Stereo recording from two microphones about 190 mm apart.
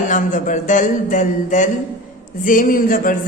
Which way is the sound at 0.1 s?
45° left (ahead or behind).